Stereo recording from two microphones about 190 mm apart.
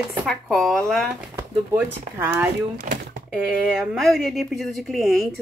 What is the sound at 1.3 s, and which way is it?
Speech, 10° right (ahead or behind).